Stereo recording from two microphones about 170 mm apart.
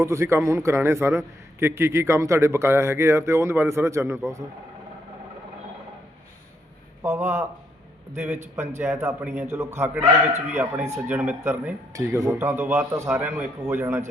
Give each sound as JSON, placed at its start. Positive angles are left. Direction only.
{"t": 0.0, "sound": "a man's voice", "side_deg": -15}
{"t": 7.0, "sound": "a man's voice", "side_deg": -15}
{"t": 8.5, "sound": "a man's voice", "side_deg": -15}